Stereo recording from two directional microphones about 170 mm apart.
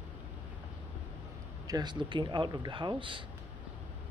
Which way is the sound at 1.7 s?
25° right (ahead or behind).